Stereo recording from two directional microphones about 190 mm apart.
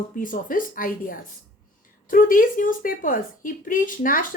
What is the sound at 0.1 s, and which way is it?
Speech, 45° left (ahead or behind).